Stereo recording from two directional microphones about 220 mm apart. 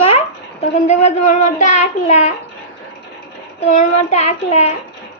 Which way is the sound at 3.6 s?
30° left (ahead or behind).